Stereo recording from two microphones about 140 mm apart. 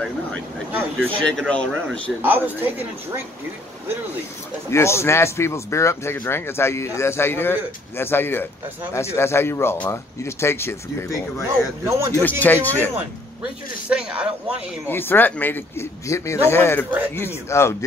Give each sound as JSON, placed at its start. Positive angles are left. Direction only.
{"t": 0.7, "sound": "speech", "side_deg": -15}
{"t": 1.2, "sound": "a man's voice", "side_deg": 5}
{"t": 2.2, "sound": "speech", "side_deg": -15}
{"t": 4.6, "sound": "a man's voice", "side_deg": 20}
{"t": 12.2, "sound": "a man's voice", "side_deg": 10}
{"t": 13.8, "sound": "speech", "side_deg": -5}
{"t": 14.9, "sound": "a man's voice", "side_deg": 15}